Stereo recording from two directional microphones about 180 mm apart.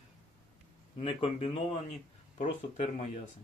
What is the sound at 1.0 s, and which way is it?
Speech, 35° left (ahead or behind).